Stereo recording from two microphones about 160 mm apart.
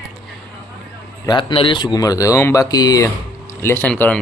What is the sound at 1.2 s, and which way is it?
Speech, 30° left (ahead or behind).